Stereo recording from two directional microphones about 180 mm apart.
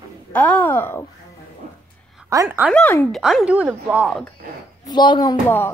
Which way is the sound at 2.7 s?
10° left (ahead or behind).